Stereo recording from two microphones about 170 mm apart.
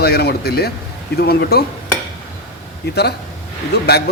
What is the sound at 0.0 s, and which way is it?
Speech, 70° left (ahead or behind).